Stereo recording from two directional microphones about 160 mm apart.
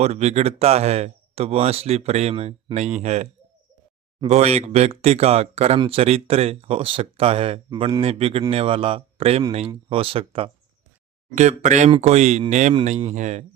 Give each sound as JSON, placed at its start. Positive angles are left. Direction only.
{"t": 0.0, "sound": "speech", "side_deg": -45}
{"t": 4.3, "sound": "speech", "side_deg": -40}
{"t": 11.3, "sound": "speech", "side_deg": -50}